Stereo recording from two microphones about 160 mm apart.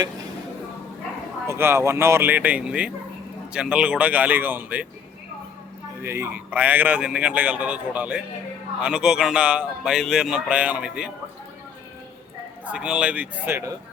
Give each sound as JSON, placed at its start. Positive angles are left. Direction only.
{"t": 1.5, "sound": "a man's voice", "side_deg": -15}
{"t": 6.0, "sound": "a man's voice", "side_deg": -15}
{"t": 12.6, "sound": "a man's voice", "side_deg": -10}